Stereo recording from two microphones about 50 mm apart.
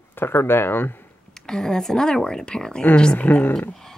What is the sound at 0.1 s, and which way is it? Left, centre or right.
Speech, left.